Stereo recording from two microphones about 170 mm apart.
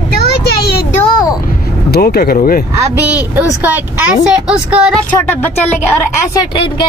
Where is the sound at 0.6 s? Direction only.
70° left (ahead or behind).